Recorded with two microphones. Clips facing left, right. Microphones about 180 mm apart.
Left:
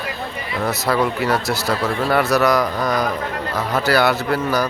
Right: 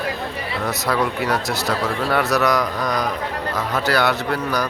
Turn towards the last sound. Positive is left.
turn(degrees=5)  # may be behind; listen again after turning